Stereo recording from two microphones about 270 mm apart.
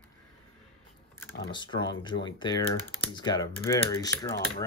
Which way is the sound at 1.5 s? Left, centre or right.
Centre.